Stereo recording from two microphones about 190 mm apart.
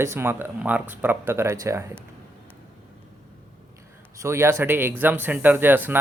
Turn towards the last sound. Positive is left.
turn(degrees=-10)  # may be behind; listen again after turning